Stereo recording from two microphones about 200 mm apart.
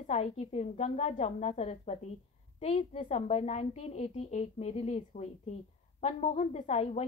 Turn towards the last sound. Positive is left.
turn(degrees=35)  # may be behind; listen again after turning